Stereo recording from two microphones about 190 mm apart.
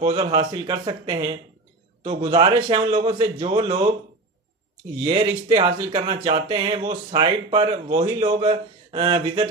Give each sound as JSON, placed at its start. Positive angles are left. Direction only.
{"t": 0.0, "sound": "speech", "side_deg": -30}
{"t": 5.0, "sound": "speech", "side_deg": -25}